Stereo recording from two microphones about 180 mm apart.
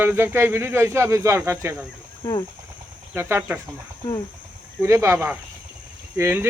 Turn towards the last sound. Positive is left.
turn(degrees=-15)  # may be behind; listen again after turning